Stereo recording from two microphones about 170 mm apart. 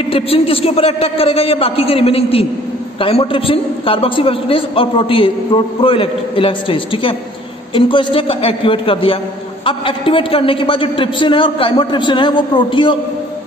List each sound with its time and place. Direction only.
0.1 s a man's voice: 35° left (ahead or behind)